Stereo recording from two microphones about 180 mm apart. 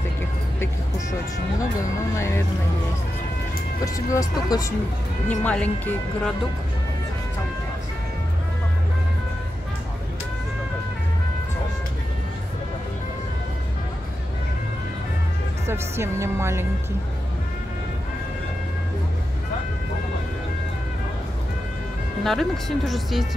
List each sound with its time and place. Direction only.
2.1 s speech: 15° left (ahead or behind)
3.8 s speech: 20° left (ahead or behind)
5.4 s speech: 10° left (ahead or behind)
15.6 s speech: 15° right (ahead or behind)
22.2 s speech: centre (ahead or behind)